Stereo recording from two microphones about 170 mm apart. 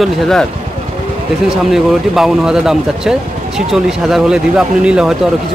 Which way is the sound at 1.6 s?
Centre (ahead or behind).